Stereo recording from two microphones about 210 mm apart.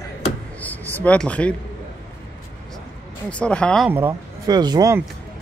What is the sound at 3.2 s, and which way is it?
Speech, 5° left (ahead or behind).